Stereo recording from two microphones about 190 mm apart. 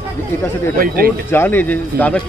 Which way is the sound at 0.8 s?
50° right (ahead or behind).